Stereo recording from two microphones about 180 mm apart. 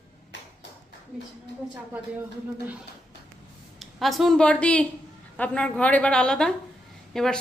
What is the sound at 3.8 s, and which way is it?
A woman's voice, centre (ahead or behind).